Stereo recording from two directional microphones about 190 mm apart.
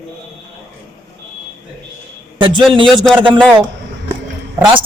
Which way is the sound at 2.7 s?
25° right (ahead or behind).